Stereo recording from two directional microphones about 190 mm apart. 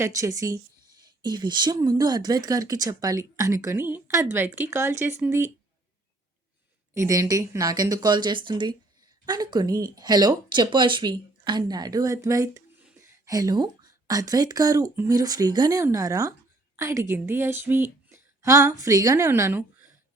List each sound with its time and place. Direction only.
0.0 s speech: 15° right (ahead or behind)
6.9 s speech: 15° right (ahead or behind)